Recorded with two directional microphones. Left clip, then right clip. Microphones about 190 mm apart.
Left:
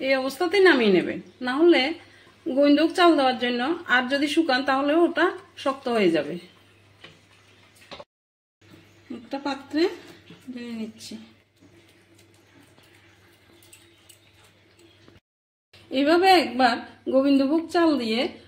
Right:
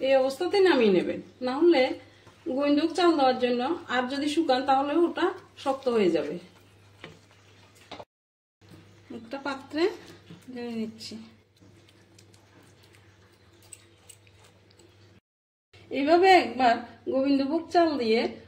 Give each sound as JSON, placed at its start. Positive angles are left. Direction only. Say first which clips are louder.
{"t": 0.0, "sound": "a woman's voice", "louder": "even", "side_deg": 35}
{"t": 9.3, "sound": "a woman's voice", "louder": "left 4 dB", "side_deg": 25}
{"t": 15.9, "sound": "a woman's voice", "louder": "left 1 dB", "side_deg": 35}